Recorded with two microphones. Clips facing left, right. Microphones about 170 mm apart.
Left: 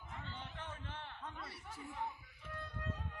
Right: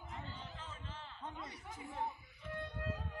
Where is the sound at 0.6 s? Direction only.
60° left (ahead or behind).